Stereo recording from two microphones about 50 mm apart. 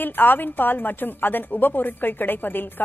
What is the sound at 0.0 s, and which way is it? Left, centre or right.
A woman's voice, left.